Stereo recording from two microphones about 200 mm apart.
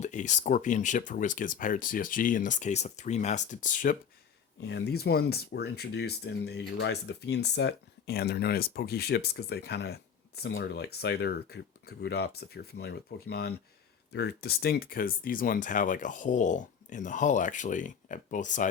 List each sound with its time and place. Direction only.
0.0 s speech: 35° left (ahead or behind)
4.6 s speech: 55° left (ahead or behind); by 18.7 s 40° left (ahead or behind)